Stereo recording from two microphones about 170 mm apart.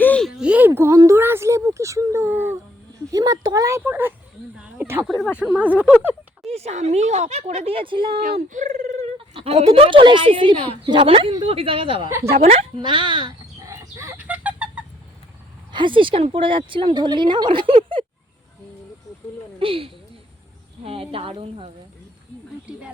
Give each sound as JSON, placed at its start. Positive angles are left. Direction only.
{"t": 0.0, "sound": "speech", "side_deg": 5}
{"t": 5.0, "sound": "speech", "side_deg": 0}
{"t": 6.4, "sound": "speech", "side_deg": -35}
{"t": 8.2, "sound": "speech", "side_deg": -50}
{"t": 12.0, "sound": "speech", "side_deg": -15}
{"t": 12.3, "sound": "chicken", "side_deg": -35}
{"t": 15.7, "sound": "speech", "side_deg": -30}
{"t": 19.5, "sound": "speech", "side_deg": -30}